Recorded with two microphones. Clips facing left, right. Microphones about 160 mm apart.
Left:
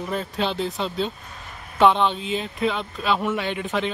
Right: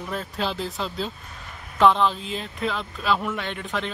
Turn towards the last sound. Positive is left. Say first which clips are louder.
# left 4 dB
turn(degrees=5)  # may be behind; listen again after turning